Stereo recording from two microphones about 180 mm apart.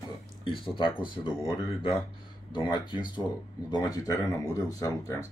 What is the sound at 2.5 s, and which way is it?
Speech, 25° left (ahead or behind).